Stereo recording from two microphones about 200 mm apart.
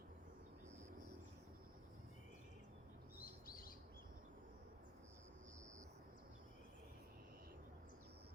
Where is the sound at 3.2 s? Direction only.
45° left (ahead or behind).